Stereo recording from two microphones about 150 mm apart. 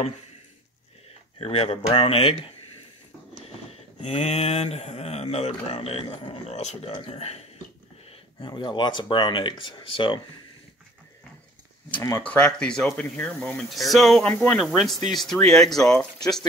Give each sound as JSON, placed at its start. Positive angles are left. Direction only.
{"t": 1.4, "sound": "speech", "side_deg": 40}
{"t": 4.0, "sound": "speech", "side_deg": 45}
{"t": 11.9, "sound": "speech", "side_deg": 20}
{"t": 14.3, "sound": "speech", "side_deg": 10}
{"t": 14.6, "sound": "speech", "side_deg": 0}